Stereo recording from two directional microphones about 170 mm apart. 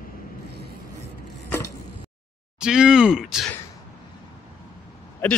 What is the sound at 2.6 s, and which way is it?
Groan, 5° right (ahead or behind).